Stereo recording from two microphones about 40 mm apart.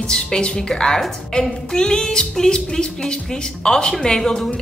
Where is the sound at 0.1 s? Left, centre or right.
Left.